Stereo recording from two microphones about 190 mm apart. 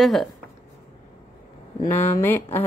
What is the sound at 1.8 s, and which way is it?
Speech, 10° left (ahead or behind).